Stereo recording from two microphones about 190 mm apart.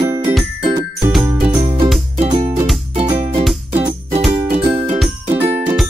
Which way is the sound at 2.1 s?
40° right (ahead or behind).